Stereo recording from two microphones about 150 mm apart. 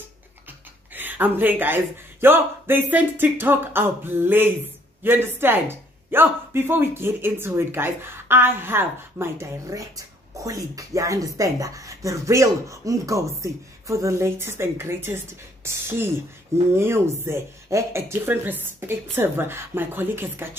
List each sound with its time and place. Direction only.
0.9 s speech: 10° right (ahead or behind)